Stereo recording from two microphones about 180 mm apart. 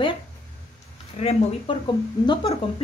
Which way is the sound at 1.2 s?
35° left (ahead or behind).